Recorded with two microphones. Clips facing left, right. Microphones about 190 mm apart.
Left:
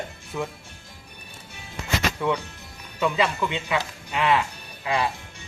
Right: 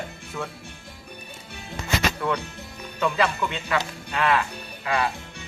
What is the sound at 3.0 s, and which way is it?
Speech, 15° left (ahead or behind).